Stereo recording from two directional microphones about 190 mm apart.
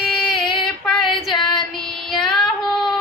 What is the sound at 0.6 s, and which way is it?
Female singing, 5° left (ahead or behind).